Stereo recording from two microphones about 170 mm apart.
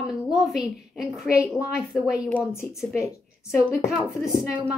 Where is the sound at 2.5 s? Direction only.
15° left (ahead or behind).